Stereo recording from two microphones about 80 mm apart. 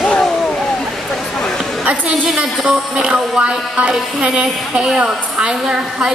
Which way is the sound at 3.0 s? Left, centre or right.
Centre.